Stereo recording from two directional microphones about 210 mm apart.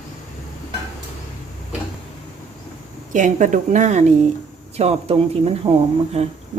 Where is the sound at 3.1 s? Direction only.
35° right (ahead or behind).